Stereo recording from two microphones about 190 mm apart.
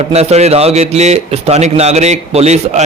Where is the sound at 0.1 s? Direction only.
35° right (ahead or behind).